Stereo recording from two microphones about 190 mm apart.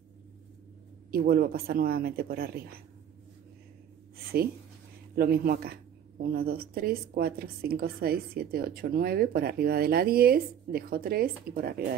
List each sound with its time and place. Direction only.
1.1 s a woman's voice: 55° right (ahead or behind)
5.1 s a woman's voice: 55° right (ahead or behind)